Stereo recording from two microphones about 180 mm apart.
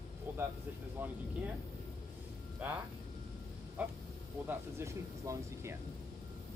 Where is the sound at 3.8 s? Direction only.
10° right (ahead or behind).